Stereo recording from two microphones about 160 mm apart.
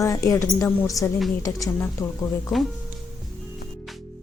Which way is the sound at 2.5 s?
Centre (ahead or behind).